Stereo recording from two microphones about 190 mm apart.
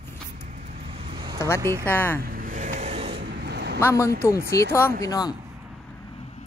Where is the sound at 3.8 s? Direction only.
15° left (ahead or behind).